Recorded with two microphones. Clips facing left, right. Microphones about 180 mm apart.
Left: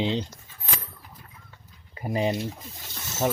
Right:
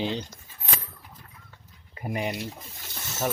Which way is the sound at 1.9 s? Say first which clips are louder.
Left 4 dB; 25° left (ahead or behind).